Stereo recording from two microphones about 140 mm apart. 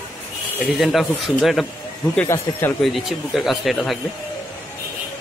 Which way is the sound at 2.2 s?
15° left (ahead or behind).